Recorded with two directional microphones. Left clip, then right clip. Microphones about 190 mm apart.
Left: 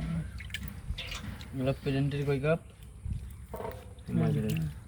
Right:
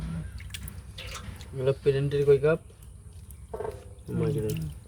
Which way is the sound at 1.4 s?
50° right (ahead or behind).